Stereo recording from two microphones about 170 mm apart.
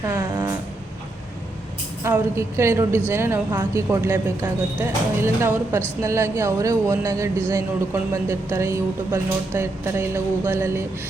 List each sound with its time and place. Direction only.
0.0 s music: 20° right (ahead or behind)
2.0 s speech: 15° right (ahead or behind)